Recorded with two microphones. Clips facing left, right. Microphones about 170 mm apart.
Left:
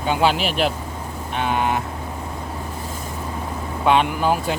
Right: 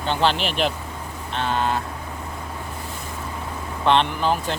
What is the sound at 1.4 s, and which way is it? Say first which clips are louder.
Vehicle: left 2 dB; 15° left (ahead or behind).